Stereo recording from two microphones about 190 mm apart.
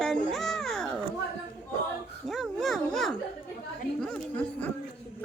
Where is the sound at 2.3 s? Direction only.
Centre (ahead or behind).